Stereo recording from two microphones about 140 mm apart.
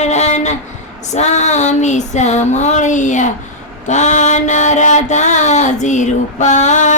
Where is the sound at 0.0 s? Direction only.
55° left (ahead or behind).